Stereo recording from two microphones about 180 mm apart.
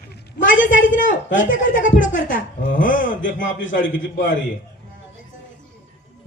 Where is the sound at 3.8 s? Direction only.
90° left.